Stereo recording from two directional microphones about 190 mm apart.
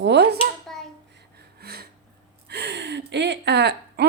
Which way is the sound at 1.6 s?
55° right (ahead or behind).